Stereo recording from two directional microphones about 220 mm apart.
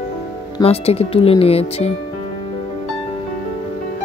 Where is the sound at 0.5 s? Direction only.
25° left (ahead or behind).